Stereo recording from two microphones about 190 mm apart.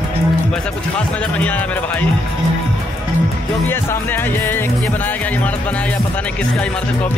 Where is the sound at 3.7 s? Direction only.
10° left (ahead or behind).